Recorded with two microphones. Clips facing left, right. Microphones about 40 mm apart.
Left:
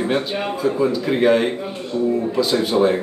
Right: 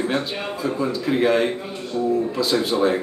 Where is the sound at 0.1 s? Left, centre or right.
Centre.